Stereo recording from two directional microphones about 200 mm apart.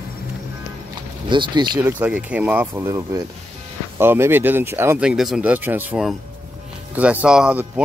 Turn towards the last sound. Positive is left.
turn(degrees=-5)  # may be behind; listen again after turning